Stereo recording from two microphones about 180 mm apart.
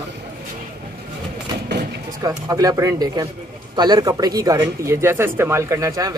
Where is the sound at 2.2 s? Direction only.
20° right (ahead or behind).